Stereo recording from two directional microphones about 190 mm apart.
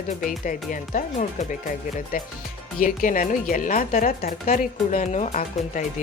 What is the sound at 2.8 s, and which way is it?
Speech, 45° left (ahead or behind).